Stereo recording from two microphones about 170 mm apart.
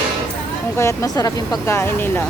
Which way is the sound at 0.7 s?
15° left (ahead or behind).